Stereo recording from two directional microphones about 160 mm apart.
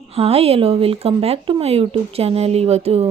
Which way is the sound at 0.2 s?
40° right (ahead or behind).